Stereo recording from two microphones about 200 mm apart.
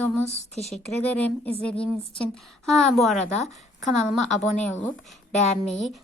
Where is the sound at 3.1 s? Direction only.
35° left (ahead or behind).